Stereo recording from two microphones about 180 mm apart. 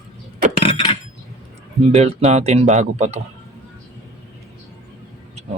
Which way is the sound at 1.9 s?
35° right (ahead or behind).